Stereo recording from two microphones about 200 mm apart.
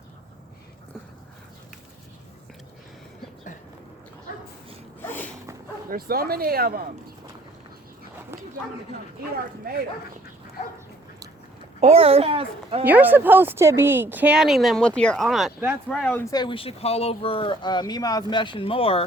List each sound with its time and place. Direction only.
4.9 s sneeze: 10° left (ahead or behind)
5.9 s speech: 50° right (ahead or behind)
9.7 s speech: 50° right (ahead or behind)
11.8 s a child's voice: 30° right (ahead or behind)
12.8 s speech: 10° right (ahead or behind); by 19.0 s 30° left (ahead or behind)